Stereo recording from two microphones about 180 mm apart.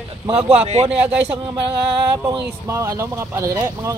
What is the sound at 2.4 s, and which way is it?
Speech, 15° right (ahead or behind).